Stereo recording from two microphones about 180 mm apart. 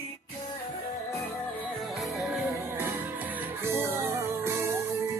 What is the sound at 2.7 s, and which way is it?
Music, 10° right (ahead or behind).